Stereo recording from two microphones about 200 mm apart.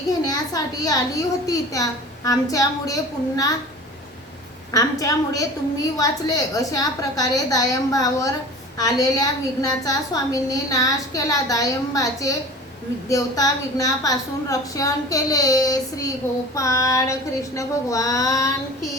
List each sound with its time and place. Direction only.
0.3 s a woman's voice: 20° left (ahead or behind)
4.7 s a woman's voice: 20° left (ahead or behind)